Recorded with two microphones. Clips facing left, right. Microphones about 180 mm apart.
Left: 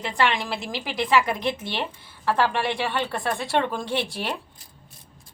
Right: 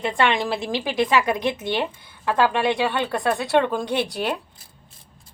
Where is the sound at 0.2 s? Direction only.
25° right (ahead or behind).